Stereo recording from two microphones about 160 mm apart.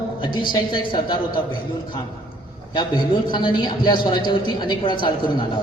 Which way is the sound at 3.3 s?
30° left (ahead or behind).